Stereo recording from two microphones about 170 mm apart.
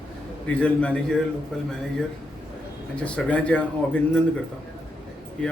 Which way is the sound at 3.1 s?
5° left (ahead or behind).